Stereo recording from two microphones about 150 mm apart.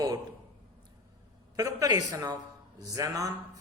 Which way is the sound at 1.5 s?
25° right (ahead or behind).